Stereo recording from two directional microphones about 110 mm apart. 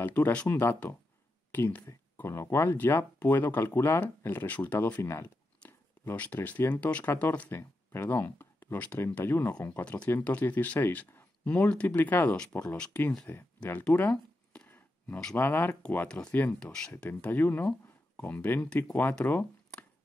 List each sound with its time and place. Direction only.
0.0 s speech: 15° left (ahead or behind)
13.3 s a sound: 15° left (ahead or behind)
15.3 s speech: 20° left (ahead or behind)